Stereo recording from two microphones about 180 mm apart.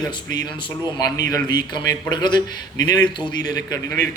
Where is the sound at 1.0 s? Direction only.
20° left (ahead or behind).